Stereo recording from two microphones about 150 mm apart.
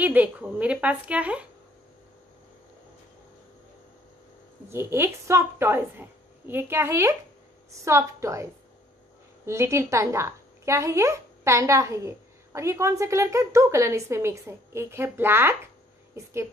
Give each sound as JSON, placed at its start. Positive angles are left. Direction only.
{"t": 0.0, "sound": "a woman's voice", "side_deg": -10}
{"t": 4.6, "sound": "a woman's voice", "side_deg": -15}
{"t": 9.5, "sound": "speech", "side_deg": -20}